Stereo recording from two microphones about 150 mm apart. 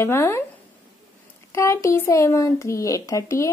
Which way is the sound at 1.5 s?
20° left (ahead or behind).